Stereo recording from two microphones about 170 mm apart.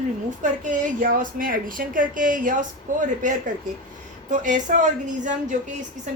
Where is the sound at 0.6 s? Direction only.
50° right (ahead or behind).